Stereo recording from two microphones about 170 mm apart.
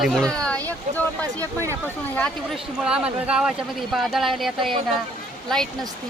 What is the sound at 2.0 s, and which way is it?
Speech, 5° left (ahead or behind).